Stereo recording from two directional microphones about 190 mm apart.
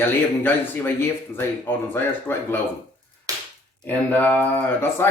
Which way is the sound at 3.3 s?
20° right (ahead or behind).